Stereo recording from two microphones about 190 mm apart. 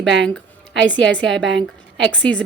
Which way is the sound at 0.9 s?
5° left (ahead or behind).